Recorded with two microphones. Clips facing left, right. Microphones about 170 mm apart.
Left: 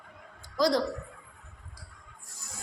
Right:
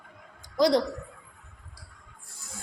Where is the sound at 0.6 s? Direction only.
20° right (ahead or behind).